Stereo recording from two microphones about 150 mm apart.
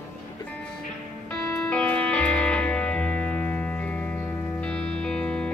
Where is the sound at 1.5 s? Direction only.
5° left (ahead or behind).